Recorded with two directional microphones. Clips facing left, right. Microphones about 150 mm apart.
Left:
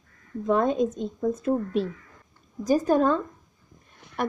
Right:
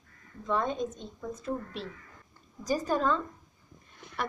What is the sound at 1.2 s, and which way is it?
Speech, 50° left (ahead or behind).